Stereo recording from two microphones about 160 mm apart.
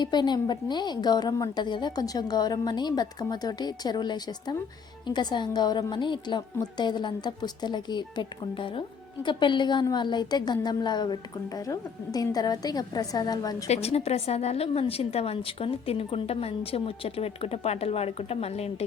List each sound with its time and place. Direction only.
0.0 s a woman's voice: 25° left (ahead or behind)
13.7 s a woman's voice: 40° left (ahead or behind)